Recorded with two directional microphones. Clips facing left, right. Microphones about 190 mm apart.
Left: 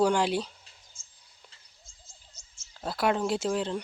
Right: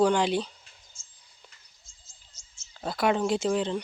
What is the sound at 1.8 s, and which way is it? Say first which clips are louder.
Bird: left 5 dB; 60° left (ahead or behind).